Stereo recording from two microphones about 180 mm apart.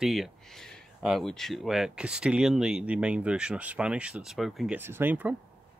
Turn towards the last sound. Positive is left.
turn(degrees=-10)  # may be behind; listen again after turning